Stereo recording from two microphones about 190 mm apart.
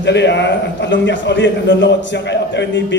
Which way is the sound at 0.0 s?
65° left (ahead or behind).